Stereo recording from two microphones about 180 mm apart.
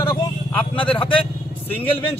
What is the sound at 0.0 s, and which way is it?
Vehicle, 20° left (ahead or behind).